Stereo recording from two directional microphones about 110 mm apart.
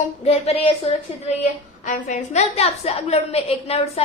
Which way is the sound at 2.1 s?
90° left.